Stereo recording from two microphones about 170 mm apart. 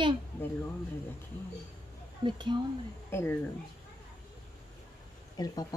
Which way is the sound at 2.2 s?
30° right (ahead or behind).